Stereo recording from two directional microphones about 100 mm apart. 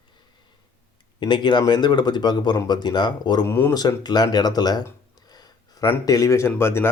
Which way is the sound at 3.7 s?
40° left (ahead or behind).